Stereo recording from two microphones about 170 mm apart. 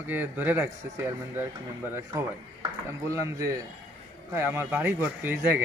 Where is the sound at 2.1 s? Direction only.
25° right (ahead or behind).